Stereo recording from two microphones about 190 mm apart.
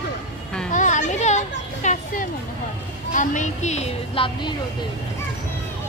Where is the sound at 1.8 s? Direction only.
40° left (ahead or behind).